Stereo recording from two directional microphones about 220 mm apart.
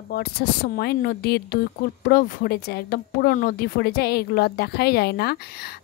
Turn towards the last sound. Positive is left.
turn(degrees=45)  # may be behind; listen again after turning